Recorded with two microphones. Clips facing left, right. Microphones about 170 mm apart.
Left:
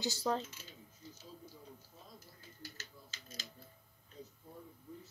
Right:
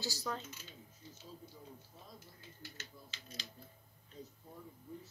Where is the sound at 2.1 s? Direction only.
40° left (ahead or behind).